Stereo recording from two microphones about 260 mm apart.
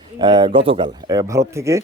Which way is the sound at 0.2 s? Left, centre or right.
Centre.